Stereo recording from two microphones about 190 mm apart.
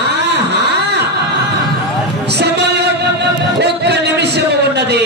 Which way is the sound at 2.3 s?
60° right (ahead or behind).